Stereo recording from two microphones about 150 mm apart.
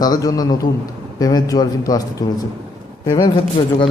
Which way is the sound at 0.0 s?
25° left (ahead or behind).